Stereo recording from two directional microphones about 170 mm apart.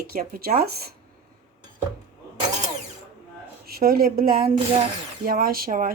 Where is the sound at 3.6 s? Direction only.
60° right (ahead or behind).